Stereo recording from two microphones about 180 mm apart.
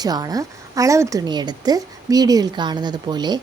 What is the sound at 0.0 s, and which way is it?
A woman's voice, 20° right (ahead or behind).